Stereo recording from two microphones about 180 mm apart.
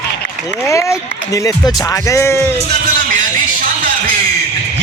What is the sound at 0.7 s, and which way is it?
Speech, 15° left (ahead or behind).